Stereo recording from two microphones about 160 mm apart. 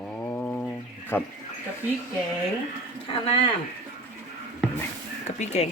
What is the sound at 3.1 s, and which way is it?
Speech, 35° left (ahead or behind).